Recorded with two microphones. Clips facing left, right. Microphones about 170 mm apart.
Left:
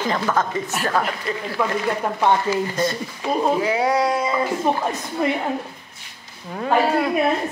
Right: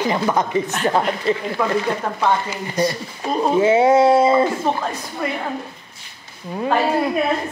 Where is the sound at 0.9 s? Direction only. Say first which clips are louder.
Right 5 dB; 25° right (ahead or behind).